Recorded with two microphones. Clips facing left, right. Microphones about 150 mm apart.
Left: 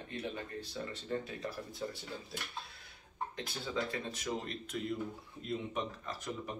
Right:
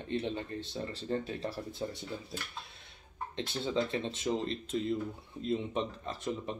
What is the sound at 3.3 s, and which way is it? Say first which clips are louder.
Speech: right 7 dB; 25° right (ahead or behind).